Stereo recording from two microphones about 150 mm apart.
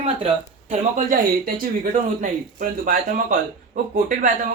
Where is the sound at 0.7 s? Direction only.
55° right (ahead or behind).